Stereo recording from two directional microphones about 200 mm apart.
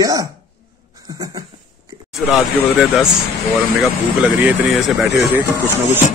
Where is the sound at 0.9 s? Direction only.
20° right (ahead or behind).